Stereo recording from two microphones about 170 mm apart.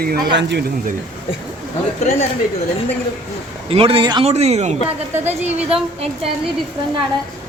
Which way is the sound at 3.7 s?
35° right (ahead or behind).